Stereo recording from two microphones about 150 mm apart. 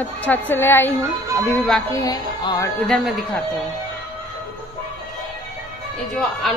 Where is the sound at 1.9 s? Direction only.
25° left (ahead or behind).